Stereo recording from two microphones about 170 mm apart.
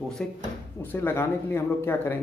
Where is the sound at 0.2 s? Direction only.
5° left (ahead or behind).